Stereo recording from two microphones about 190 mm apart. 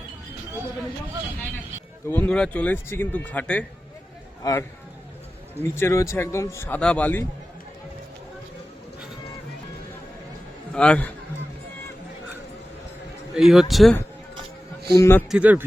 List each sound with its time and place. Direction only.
2.0 s a man's voice: 10° left (ahead or behind)
4.4 s a man's voice: 20° left (ahead or behind)
5.6 s a man's voice: 15° left (ahead or behind)
10.8 s a man's voice: 5° left (ahead or behind)
13.3 s speech: centre (ahead or behind)
14.9 s a man's voice: 15° left (ahead or behind)
15.3 s speech: 5° right (ahead or behind)